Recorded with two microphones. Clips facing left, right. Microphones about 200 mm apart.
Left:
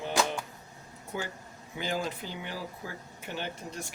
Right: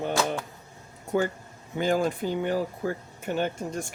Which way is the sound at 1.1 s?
50° right (ahead or behind).